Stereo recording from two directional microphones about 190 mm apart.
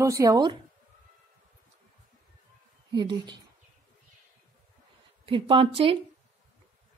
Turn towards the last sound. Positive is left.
turn(degrees=-30)  # may be behind; listen again after turning